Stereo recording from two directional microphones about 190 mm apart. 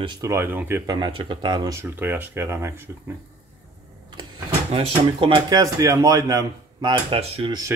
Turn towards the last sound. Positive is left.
turn(degrees=-25)  # may be behind; listen again after turning